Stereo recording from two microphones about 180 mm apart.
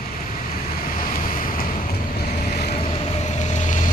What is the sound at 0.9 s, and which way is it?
Waves, 50° left (ahead or behind).